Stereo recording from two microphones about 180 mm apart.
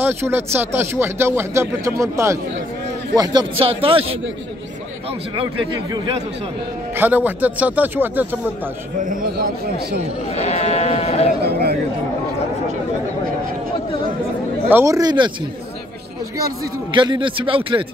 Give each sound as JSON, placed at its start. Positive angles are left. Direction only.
{"t": 0.0, "sound": "speech", "side_deg": -10}
{"t": 3.2, "sound": "speech", "side_deg": -25}
{"t": 7.0, "sound": "speech", "side_deg": -10}
{"t": 9.1, "sound": "a man's voice", "side_deg": -50}
{"t": 10.3, "sound": "speech", "side_deg": 35}
{"t": 11.4, "sound": "a man's voice", "side_deg": -65}
{"t": 14.7, "sound": "a man's voice", "side_deg": -15}
{"t": 16.9, "sound": "a man's voice", "side_deg": -25}